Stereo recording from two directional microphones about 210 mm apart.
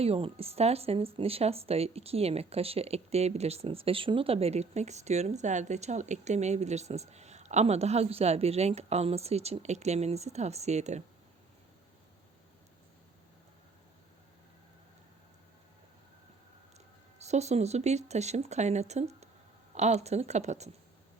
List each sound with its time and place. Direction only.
0.0 s speech: 30° right (ahead or behind)
17.2 s speech: 30° right (ahead or behind)